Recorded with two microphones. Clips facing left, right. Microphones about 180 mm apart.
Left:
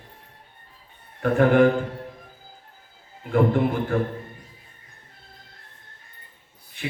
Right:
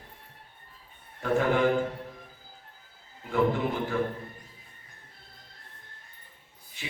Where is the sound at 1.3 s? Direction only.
55° left (ahead or behind).